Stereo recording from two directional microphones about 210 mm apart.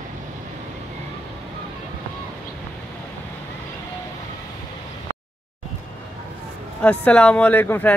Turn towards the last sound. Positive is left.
turn(degrees=10)  # may be behind; listen again after turning